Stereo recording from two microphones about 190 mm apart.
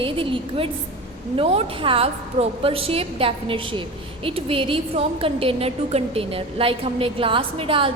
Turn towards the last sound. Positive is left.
turn(degrees=-30)  # may be behind; listen again after turning